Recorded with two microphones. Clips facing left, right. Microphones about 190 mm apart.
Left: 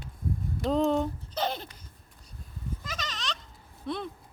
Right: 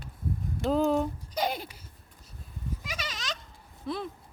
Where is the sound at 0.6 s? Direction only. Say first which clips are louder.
Even; 5° right (ahead or behind).